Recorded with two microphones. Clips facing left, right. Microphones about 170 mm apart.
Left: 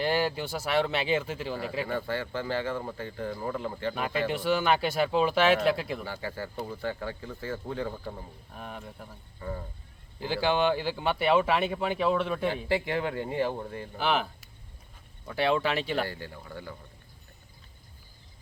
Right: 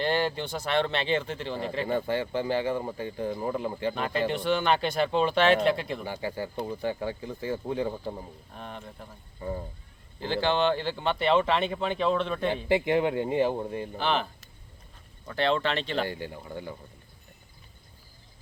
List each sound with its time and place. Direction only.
0.0 s speech: 5° left (ahead or behind)
1.9 s speech: 20° right (ahead or behind)
3.9 s speech: 5° left (ahead or behind)
6.1 s speech: 15° right (ahead or behind)
8.5 s speech: 5° left (ahead or behind)
9.4 s speech: 20° right (ahead or behind)
10.2 s speech: 10° left (ahead or behind)
12.6 s speech: 20° right (ahead or behind)
14.0 s speech: 10° left (ahead or behind)
16.0 s speech: 20° right (ahead or behind)